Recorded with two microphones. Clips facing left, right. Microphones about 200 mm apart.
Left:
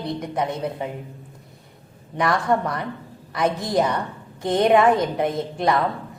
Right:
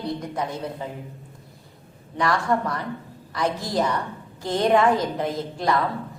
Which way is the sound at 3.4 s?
20° left (ahead or behind).